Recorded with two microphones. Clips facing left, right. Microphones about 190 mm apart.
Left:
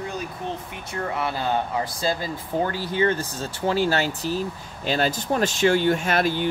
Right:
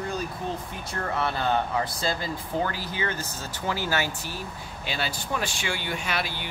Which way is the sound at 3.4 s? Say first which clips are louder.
Left 6 dB; 30° left (ahead or behind).